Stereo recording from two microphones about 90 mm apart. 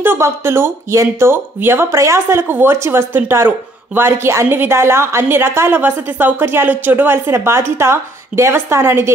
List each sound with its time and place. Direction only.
0.0 s speech: 25° right (ahead or behind)